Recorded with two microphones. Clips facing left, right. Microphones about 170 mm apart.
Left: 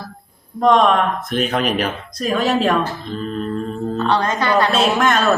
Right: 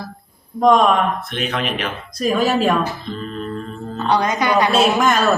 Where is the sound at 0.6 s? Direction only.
5° right (ahead or behind).